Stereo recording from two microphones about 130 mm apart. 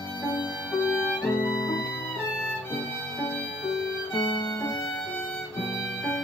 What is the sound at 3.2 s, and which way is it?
Music, 10° left (ahead or behind).